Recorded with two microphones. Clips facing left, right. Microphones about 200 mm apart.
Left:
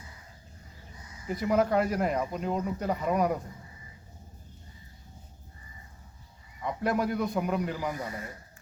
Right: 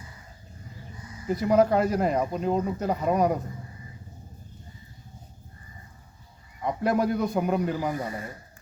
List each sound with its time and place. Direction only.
1.3 s speech: 35° right (ahead or behind)
6.6 s speech: 35° right (ahead or behind)